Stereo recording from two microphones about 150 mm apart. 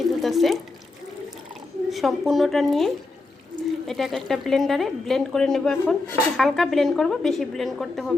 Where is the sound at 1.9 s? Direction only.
Centre (ahead or behind).